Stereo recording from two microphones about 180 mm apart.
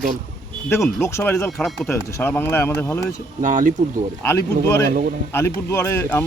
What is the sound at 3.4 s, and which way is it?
Speech, 45° right (ahead or behind).